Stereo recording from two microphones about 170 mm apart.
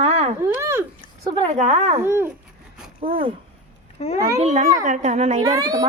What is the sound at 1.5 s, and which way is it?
Speech, 40° right (ahead or behind).